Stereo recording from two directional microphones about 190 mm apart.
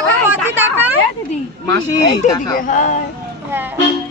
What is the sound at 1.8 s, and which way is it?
Speech, 20° left (ahead or behind).